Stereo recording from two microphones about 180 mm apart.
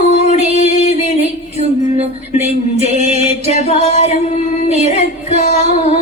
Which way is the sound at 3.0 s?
40° left (ahead or behind).